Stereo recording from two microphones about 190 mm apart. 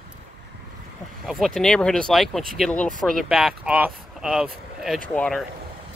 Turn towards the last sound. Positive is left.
turn(degrees=0)  # may be behind; listen again after turning